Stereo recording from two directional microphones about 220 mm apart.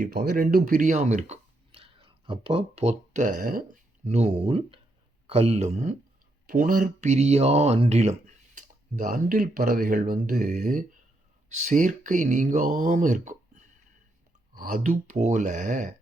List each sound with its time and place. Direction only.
0.0 s speech: 45° right (ahead or behind)